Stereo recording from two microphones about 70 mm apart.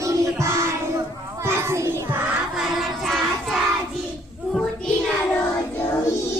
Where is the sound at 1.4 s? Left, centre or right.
Right.